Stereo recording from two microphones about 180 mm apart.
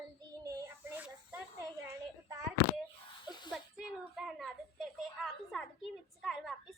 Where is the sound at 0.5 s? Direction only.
15° right (ahead or behind).